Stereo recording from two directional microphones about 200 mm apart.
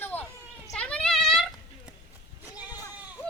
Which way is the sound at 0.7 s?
5° left (ahead or behind).